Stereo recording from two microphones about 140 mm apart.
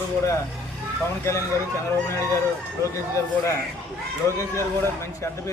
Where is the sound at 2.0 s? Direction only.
20° left (ahead or behind).